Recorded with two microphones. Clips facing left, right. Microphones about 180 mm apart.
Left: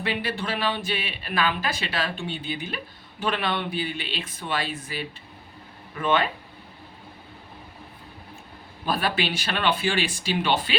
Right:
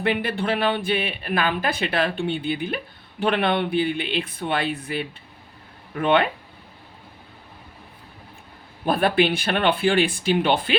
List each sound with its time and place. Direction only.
0.0 s speech: 55° right (ahead or behind)
8.8 s speech: 55° right (ahead or behind)